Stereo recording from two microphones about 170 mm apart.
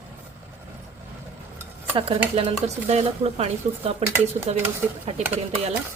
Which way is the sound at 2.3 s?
35° right (ahead or behind).